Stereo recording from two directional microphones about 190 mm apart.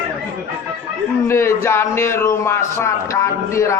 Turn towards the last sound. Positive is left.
turn(degrees=15)  # may be behind; listen again after turning